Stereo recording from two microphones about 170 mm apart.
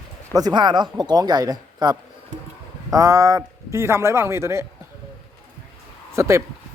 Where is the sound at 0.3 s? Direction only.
25° right (ahead or behind).